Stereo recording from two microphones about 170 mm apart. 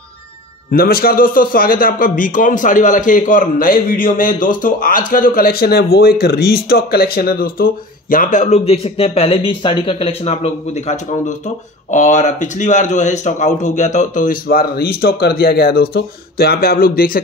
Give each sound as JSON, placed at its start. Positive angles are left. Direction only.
{"t": 0.7, "sound": "a man's voice", "side_deg": 60}